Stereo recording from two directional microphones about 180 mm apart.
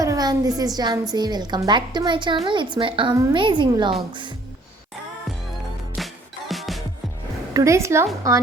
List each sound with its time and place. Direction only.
0.0 s a woman's voice: 20° right (ahead or behind)
6.0 s music: centre (ahead or behind)
7.5 s a woman's voice: 15° right (ahead or behind)